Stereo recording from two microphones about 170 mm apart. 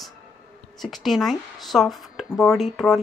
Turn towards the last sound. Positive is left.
turn(degrees=0)  # may be behind; listen again after turning